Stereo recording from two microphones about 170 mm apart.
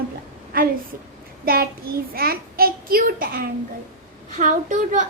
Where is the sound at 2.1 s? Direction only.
60° right (ahead or behind).